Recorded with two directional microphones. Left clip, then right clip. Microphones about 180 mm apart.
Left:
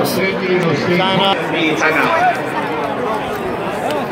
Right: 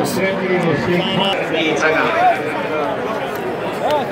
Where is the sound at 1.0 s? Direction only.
35° left (ahead or behind).